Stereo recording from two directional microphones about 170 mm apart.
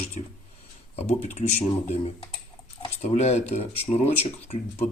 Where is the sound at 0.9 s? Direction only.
40° left (ahead or behind).